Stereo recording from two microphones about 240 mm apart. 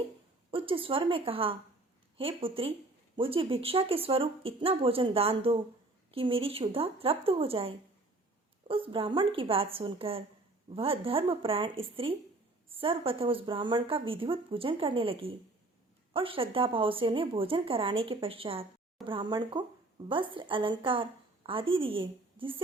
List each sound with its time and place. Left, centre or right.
0.5 s a woman's voice: right